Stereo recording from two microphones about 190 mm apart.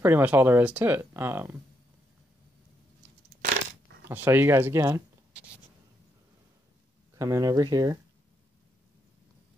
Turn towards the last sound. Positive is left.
turn(degrees=-20)  # may be behind; listen again after turning